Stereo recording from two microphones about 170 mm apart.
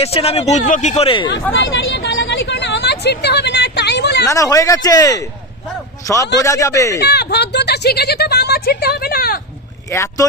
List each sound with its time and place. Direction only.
0.0 s speech: 35° left (ahead or behind)
1.9 s vehicle: 90° left
4.3 s speech: 20° left (ahead or behind)
6.4 s speech: 15° left (ahead or behind)
7.0 s speech: 75° left (ahead or behind); by 9.4 s 60° left (ahead or behind)
9.9 s speech: 15° left (ahead or behind)